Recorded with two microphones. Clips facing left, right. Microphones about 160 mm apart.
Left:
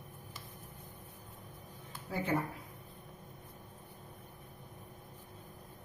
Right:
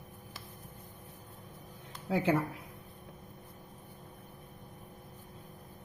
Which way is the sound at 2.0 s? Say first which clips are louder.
Right 8 dB; 80° right.